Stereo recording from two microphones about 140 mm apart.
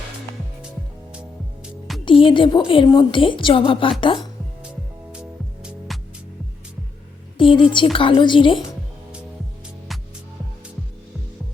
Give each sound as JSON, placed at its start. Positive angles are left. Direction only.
{"t": 2.0, "sound": "a woman's voice", "side_deg": 40}
{"t": 5.9, "sound": "music", "side_deg": 0}
{"t": 7.3, "sound": "a woman's voice", "side_deg": 40}